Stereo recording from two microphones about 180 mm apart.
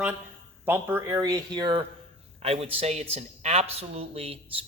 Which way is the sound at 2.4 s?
35° right (ahead or behind).